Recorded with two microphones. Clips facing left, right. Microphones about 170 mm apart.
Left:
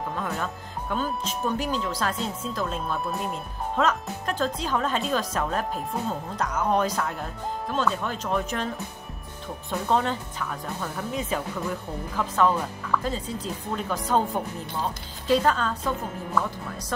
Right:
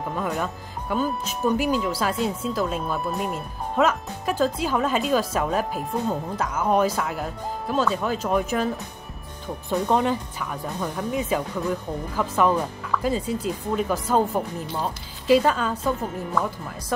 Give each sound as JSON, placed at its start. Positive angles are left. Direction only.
{"t": 0.0, "sound": "speech", "side_deg": -5}
{"t": 9.8, "sound": "speech", "side_deg": -10}
{"t": 15.2, "sound": "speech", "side_deg": -10}